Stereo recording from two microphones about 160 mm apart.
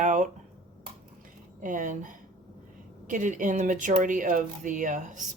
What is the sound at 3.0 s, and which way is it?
A woman's voice, 55° right (ahead or behind).